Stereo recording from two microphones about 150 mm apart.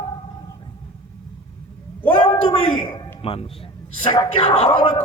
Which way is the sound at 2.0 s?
35° left (ahead or behind).